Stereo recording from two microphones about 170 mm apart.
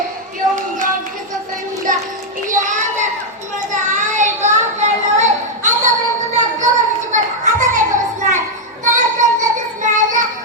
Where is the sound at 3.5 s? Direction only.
50° right (ahead or behind).